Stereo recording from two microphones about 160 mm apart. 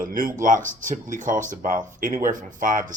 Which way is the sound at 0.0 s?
60° right (ahead or behind).